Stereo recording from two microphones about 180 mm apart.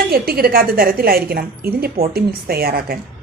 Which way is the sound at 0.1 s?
55° right (ahead or behind).